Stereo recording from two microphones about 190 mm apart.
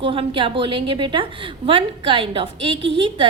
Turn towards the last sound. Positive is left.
turn(degrees=-25)  # may be behind; listen again after turning